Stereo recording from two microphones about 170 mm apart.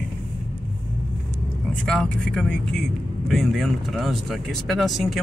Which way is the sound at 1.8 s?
5° left (ahead or behind).